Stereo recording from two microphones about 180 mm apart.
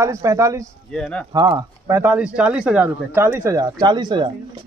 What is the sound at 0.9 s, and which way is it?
Speech, 5° left (ahead or behind).